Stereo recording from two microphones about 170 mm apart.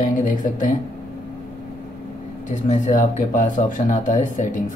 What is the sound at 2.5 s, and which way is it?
Speech, 45° left (ahead or behind).